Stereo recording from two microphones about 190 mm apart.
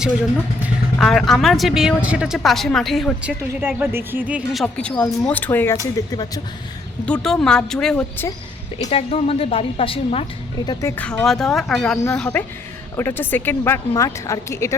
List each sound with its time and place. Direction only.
0.9 s speech: centre (ahead or behind)
3.6 s a woman's voice: 10° right (ahead or behind)
4.6 s speech: 5° left (ahead or behind)
7.0 s speech: 5° left (ahead or behind)
8.9 s a woman's voice: 30° left (ahead or behind)
10.7 s speech: 15° left (ahead or behind)